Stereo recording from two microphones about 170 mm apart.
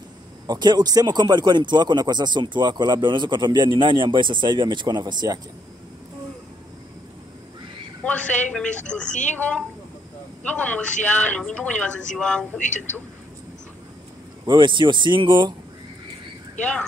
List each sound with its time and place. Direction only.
0.5 s speech: 25° right (ahead or behind)
8.0 s a man's voice: 5° left (ahead or behind)
14.4 s speech: 25° right (ahead or behind)